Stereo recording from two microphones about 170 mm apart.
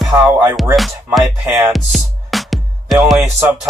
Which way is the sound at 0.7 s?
Centre (ahead or behind).